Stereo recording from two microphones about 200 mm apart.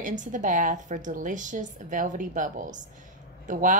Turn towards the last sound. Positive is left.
turn(degrees=-40)  # may be behind; listen again after turning